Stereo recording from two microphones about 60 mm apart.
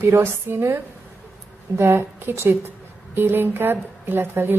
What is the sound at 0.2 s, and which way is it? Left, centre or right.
A woman's voice, right.